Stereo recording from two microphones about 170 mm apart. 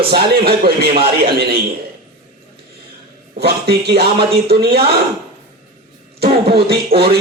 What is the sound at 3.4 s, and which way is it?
A man's voice, 70° right (ahead or behind).